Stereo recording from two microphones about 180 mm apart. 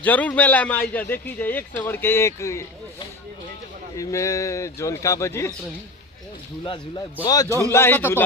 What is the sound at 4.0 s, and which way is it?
Speech, 15° left (ahead or behind).